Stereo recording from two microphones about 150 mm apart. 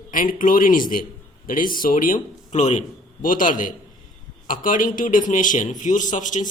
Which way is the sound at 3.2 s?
65° left (ahead or behind).